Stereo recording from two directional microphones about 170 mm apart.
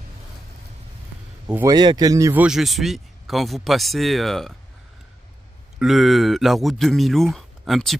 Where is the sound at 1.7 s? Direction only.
25° right (ahead or behind).